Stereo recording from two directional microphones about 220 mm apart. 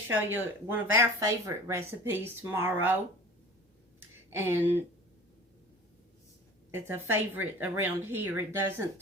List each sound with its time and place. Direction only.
0.1 s speech: 10° right (ahead or behind)
4.3 s speech: 10° right (ahead or behind)
6.7 s speech: 10° right (ahead or behind)